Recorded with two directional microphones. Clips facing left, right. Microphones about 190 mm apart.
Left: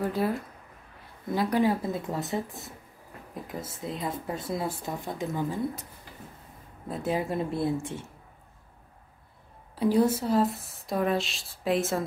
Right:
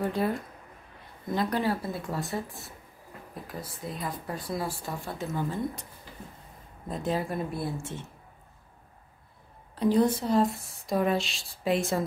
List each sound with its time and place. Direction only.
0.0 s speech: 5° left (ahead or behind)
6.9 s speech: 10° left (ahead or behind)
7.2 s speech: 25° left (ahead or behind)
9.8 s speech: 10° left (ahead or behind)